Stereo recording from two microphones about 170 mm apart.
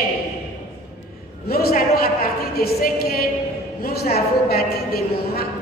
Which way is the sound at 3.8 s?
65° left (ahead or behind).